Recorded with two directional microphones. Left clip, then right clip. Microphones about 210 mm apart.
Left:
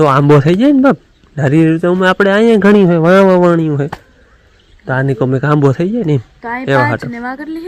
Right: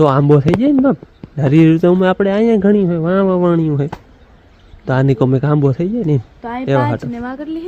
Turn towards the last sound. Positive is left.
turn(degrees=10)  # may be behind; listen again after turning